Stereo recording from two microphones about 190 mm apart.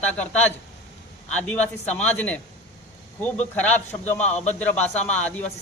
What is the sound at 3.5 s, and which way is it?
Speech, 10° left (ahead or behind).